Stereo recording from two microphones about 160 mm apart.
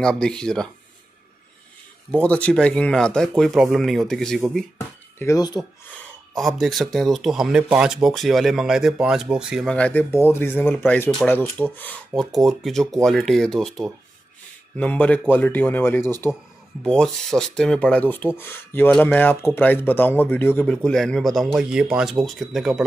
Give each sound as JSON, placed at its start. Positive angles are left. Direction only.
{"t": 0.0, "sound": "speech", "side_deg": 5}
{"t": 2.0, "sound": "speech", "side_deg": 5}
{"t": 4.7, "sound": "speech", "side_deg": 20}
{"t": 6.3, "sound": "speech", "side_deg": 0}
{"t": 12.4, "sound": "speech", "side_deg": 0}